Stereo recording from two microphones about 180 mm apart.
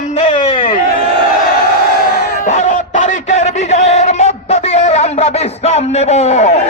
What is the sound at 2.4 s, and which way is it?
Music, 45° left (ahead or behind).